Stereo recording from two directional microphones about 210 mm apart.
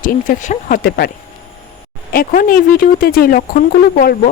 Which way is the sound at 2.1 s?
40° left (ahead or behind).